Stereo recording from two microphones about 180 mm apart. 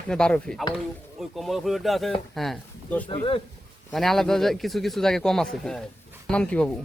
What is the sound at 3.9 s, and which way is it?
Speech, centre (ahead or behind).